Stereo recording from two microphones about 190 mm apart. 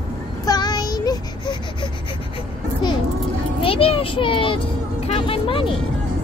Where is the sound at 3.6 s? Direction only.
30° left (ahead or behind).